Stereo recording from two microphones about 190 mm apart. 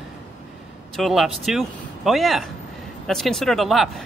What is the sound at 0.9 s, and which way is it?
A man's voice, centre (ahead or behind).